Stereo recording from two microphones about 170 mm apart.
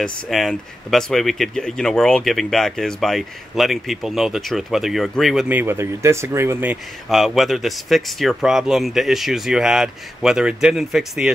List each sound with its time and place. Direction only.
0.0 s speech: centre (ahead or behind)
7.1 s speech: centre (ahead or behind)